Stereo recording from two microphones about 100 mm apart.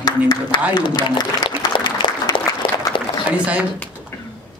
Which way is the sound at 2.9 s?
55° left (ahead or behind).